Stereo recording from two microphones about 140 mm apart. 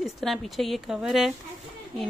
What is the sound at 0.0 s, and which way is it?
Speech, centre (ahead or behind).